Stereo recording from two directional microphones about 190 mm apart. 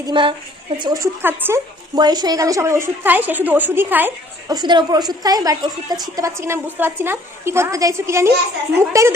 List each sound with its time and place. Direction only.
0.0 s a woman's voice: 25° right (ahead or behind); by 4.5 s 10° right (ahead or behind)
4.5 s a woman's voice: 25° right (ahead or behind)